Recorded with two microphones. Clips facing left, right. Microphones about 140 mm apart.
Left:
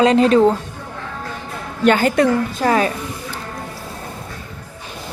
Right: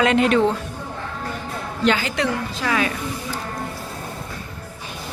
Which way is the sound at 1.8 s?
50° left (ahead or behind).